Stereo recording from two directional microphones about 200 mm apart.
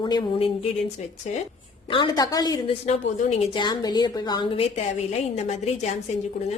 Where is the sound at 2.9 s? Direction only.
35° left (ahead or behind).